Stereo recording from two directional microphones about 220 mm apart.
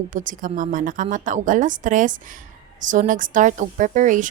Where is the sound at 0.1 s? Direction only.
35° right (ahead or behind).